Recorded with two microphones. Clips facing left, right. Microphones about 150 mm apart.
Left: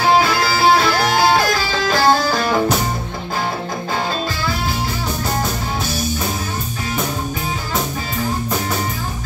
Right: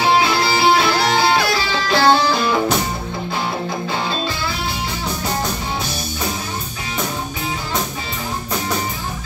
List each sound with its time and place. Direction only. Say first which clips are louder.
0.1 s music: left 2 dB; 45° left (ahead or behind)